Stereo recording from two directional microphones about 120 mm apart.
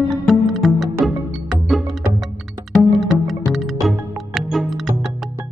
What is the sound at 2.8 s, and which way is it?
Music, centre (ahead or behind).